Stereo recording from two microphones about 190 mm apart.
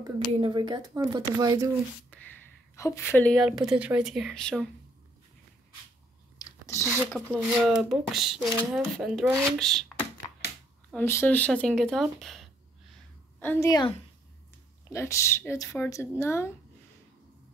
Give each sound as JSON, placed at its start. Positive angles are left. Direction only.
{"t": 0.3, "sound": "speech", "side_deg": -25}
{"t": 2.1, "sound": "a sound", "side_deg": 10}
{"t": 2.7, "sound": "speech", "side_deg": 15}
{"t": 3.4, "sound": "speech", "side_deg": -5}
{"t": 6.4, "sound": "biting", "side_deg": 15}
{"t": 7.1, "sound": "speech", "side_deg": 5}
{"t": 13.4, "sound": "speech", "side_deg": 10}